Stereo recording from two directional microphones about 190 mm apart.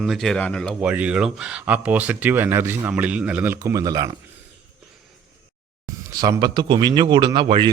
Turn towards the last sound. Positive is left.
turn(degrees=-25)  # may be behind; listen again after turning